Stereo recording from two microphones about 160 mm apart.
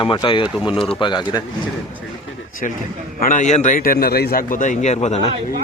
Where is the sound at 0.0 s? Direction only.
30° left (ahead or behind).